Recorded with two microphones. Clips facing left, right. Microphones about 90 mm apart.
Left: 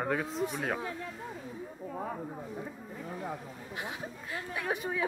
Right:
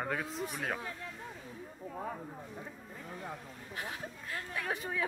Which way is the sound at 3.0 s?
10° left (ahead or behind).